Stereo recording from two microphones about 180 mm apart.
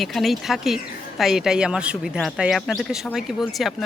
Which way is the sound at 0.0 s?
Centre (ahead or behind).